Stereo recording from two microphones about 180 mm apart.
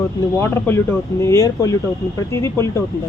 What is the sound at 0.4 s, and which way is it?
Speech, 15° left (ahead or behind).